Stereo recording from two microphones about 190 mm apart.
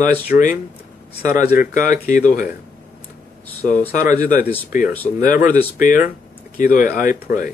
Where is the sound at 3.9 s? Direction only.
45° left (ahead or behind).